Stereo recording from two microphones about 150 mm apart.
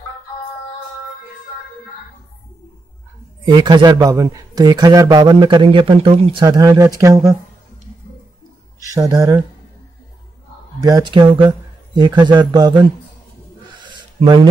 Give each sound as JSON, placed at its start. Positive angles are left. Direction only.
{"t": 3.4, "sound": "a man's voice", "side_deg": -30}
{"t": 8.9, "sound": "a man's voice", "side_deg": -25}
{"t": 10.8, "sound": "a man's voice", "side_deg": -25}
{"t": 13.7, "sound": "a sound", "side_deg": -30}